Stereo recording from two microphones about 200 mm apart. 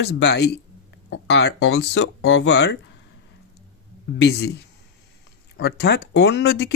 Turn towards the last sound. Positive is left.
turn(degrees=60)  # may be behind; listen again after turning